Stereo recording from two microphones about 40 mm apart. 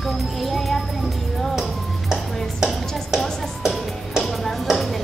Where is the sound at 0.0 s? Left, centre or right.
Centre.